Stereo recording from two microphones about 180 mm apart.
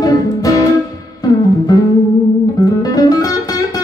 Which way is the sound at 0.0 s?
20° left (ahead or behind).